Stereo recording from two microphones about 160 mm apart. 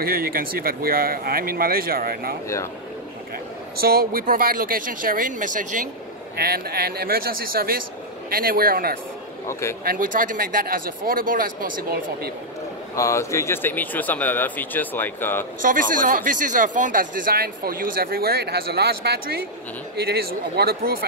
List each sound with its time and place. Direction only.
0.0 s speech: 70° right (ahead or behind)
3.8 s speech: 65° right (ahead or behind)
6.3 s speech: 75° right (ahead or behind)
9.5 s speech: 15° left (ahead or behind)
9.8 s speech: 60° right (ahead or behind)
12.9 s speech: 20° left (ahead or behind)
15.6 s speech: 55° right (ahead or behind); by 21.0 s 70° right (ahead or behind)